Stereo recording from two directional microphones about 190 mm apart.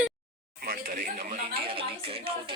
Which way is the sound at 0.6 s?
50° right (ahead or behind).